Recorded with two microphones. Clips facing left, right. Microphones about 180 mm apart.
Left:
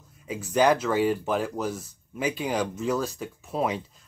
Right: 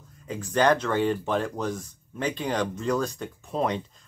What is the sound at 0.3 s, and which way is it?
Speech, 10° left (ahead or behind).